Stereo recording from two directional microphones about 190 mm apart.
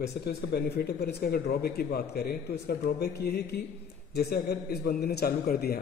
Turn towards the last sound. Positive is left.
turn(degrees=55)  # may be behind; listen again after turning